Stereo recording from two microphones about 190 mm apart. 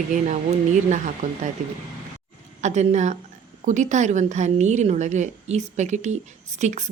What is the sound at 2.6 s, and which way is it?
A woman's voice, 40° right (ahead or behind).